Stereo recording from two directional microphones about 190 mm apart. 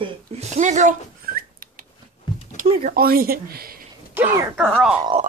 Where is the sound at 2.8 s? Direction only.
50° right (ahead or behind).